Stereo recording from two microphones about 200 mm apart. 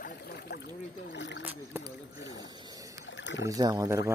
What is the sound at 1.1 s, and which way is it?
Boat, 60° left (ahead or behind).